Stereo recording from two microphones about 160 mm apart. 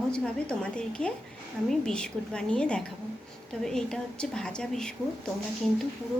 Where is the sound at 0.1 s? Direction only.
5° left (ahead or behind).